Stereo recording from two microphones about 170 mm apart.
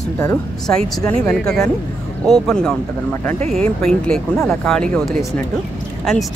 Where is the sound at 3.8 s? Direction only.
5° left (ahead or behind).